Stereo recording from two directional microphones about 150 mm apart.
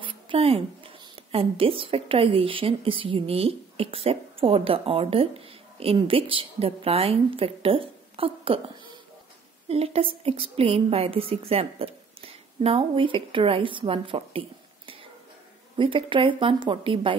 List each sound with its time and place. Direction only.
0.0 s a woman's voice: 35° right (ahead or behind)
15.8 s a woman's voice: 35° right (ahead or behind)